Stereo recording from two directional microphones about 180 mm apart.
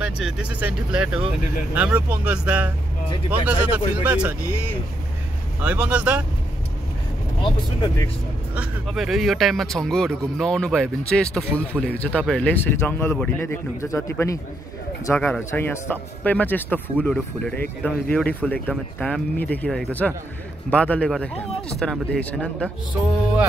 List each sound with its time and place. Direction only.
0.0 s speech: 5° right (ahead or behind)
5.6 s speech: 10° right (ahead or behind)
7.4 s speech: 25° left (ahead or behind)
8.5 s speech: centre (ahead or behind)